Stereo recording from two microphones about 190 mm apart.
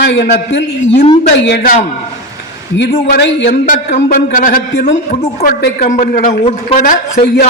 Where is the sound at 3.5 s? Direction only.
45° left (ahead or behind).